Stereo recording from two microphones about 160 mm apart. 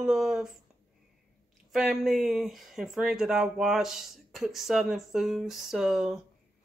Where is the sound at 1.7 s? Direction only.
Centre (ahead or behind).